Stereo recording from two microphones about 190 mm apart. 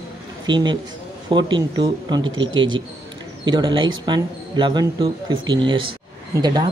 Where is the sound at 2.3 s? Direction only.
90° right.